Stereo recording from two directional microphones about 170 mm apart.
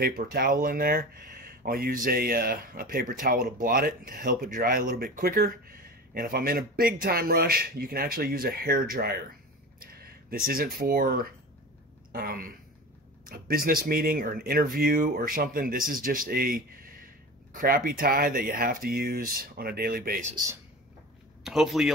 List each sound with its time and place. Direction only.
0.0 s speech: 60° right (ahead or behind)
21.5 s speech: centre (ahead or behind)